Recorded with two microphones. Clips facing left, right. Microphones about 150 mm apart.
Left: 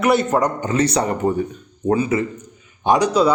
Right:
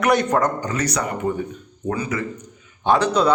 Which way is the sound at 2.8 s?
15° left (ahead or behind).